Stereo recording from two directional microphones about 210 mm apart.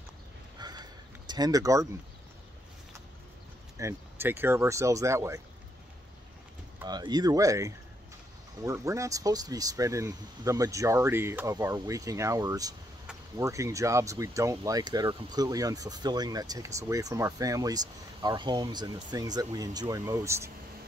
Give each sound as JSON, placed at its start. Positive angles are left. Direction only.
{"t": 0.6, "sound": "a sound", "side_deg": -20}
{"t": 3.7, "sound": "speech", "side_deg": -10}
{"t": 6.8, "sound": "speech", "side_deg": -20}